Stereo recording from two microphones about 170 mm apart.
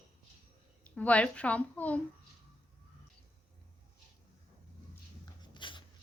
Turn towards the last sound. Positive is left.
turn(degrees=30)  # may be behind; listen again after turning